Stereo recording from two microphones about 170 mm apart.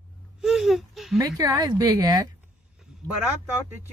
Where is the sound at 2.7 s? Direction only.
Centre (ahead or behind).